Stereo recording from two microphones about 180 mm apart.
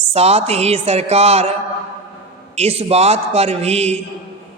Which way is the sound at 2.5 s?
35° right (ahead or behind).